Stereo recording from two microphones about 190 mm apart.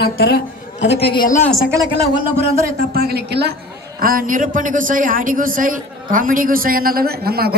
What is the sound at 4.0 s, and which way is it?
A man's voice, 50° right (ahead or behind).